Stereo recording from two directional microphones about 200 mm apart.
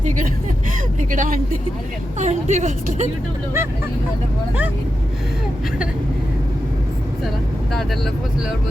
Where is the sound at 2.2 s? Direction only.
35° right (ahead or behind).